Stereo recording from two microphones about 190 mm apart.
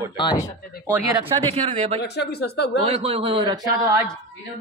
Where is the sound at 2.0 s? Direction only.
60° left (ahead or behind).